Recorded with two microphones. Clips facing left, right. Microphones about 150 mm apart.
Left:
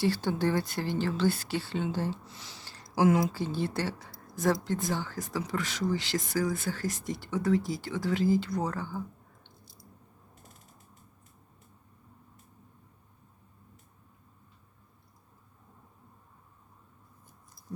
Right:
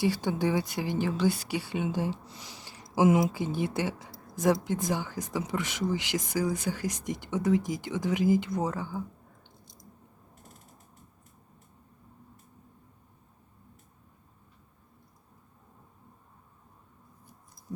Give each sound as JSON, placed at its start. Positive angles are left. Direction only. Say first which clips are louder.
{"t": 0.0, "sound": "speech", "louder": "even", "side_deg": -15}